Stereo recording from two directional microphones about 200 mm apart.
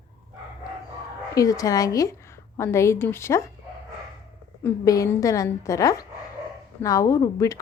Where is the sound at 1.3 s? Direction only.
15° left (ahead or behind).